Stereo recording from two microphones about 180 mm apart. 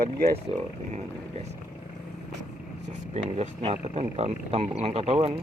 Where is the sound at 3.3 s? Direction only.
35° right (ahead or behind).